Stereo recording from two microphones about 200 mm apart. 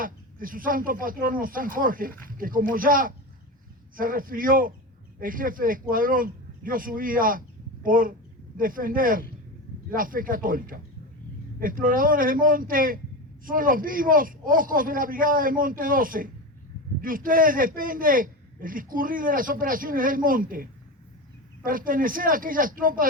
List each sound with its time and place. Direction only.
0.0 s a man's voice: 45° right (ahead or behind)